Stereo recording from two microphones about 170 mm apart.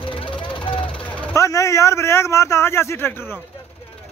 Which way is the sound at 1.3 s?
20° left (ahead or behind).